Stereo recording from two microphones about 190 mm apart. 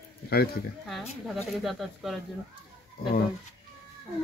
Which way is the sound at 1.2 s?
Centre (ahead or behind).